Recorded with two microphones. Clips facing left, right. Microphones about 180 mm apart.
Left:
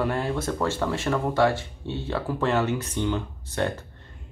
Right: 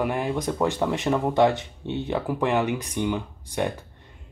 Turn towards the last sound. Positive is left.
turn(degrees=-15)  # may be behind; listen again after turning